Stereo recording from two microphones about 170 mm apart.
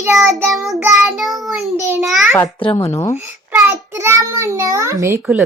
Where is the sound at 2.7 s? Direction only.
15° left (ahead or behind).